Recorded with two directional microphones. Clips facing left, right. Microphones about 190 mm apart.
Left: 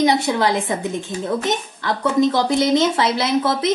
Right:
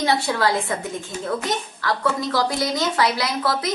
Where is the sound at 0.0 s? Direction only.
20° left (ahead or behind).